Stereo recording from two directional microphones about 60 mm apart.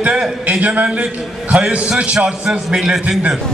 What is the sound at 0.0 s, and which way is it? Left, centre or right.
A man's voice, centre.